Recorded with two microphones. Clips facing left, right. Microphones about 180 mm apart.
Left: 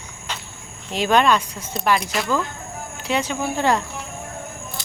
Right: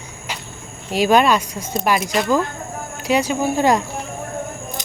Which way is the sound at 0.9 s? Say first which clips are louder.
Right 3 dB; 10° right (ahead or behind).